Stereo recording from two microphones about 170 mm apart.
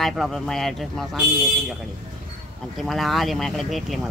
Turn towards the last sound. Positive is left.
turn(degrees=0)  # may be behind; listen again after turning